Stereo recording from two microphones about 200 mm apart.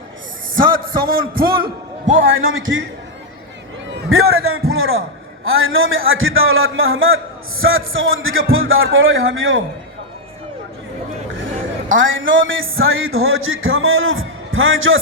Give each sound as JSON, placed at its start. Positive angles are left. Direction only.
{"t": 0.8, "sound": "a man's voice", "side_deg": -45}
{"t": 2.0, "sound": "a man's voice", "side_deg": -75}
{"t": 4.1, "sound": "a man's voice", "side_deg": -90}
{"t": 11.9, "sound": "a man's voice", "side_deg": -75}